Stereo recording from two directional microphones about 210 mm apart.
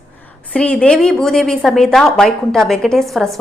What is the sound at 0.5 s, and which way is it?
A woman's voice, 5° left (ahead or behind).